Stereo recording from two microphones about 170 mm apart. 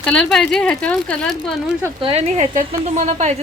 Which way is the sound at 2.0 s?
35° right (ahead or behind).